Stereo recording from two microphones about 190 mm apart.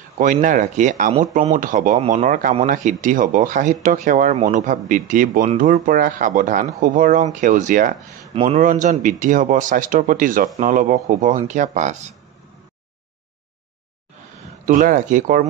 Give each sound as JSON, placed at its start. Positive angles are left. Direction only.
{"t": 0.2, "sound": "speech", "side_deg": -40}
{"t": 14.7, "sound": "speech", "side_deg": -45}